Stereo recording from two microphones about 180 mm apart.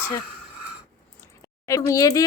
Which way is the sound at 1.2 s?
15° left (ahead or behind).